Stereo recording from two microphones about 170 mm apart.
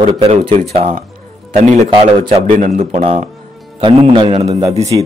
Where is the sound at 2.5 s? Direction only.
45° right (ahead or behind).